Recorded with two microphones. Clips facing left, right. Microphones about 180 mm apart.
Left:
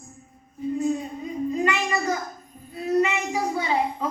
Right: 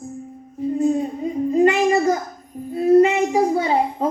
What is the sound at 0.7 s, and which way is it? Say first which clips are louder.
A woman's voice: right 6 dB; 45° right (ahead or behind).